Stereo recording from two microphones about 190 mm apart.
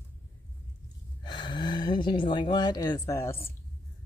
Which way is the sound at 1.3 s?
25° left (ahead or behind).